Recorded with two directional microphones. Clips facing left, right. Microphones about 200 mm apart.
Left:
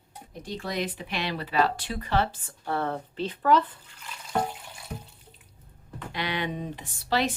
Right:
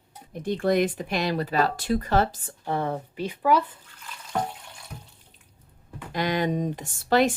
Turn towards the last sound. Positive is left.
turn(degrees=-50)  # may be behind; listen again after turning